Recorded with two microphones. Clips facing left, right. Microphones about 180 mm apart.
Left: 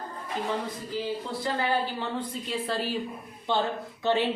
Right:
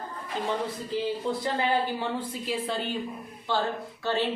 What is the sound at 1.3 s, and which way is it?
Speech, 20° right (ahead or behind).